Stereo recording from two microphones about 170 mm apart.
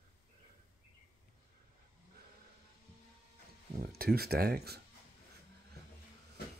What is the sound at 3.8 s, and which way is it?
Speech, 60° right (ahead or behind).